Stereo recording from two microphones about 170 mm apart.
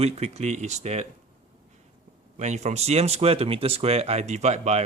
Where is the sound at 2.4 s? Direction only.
40° right (ahead or behind).